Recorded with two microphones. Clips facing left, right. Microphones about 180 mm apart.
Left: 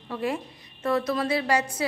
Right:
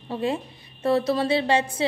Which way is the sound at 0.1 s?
25° right (ahead or behind).